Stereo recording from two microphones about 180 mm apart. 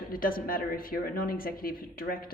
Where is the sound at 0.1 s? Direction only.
50° left (ahead or behind).